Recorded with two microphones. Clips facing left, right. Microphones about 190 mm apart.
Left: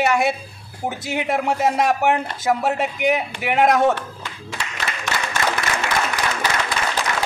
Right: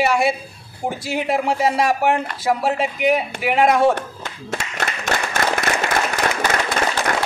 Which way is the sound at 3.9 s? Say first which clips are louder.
Right 2 dB; 45° right (ahead or behind).